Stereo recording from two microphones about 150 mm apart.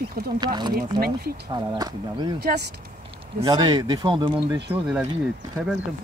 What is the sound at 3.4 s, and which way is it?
Speech, 30° right (ahead or behind).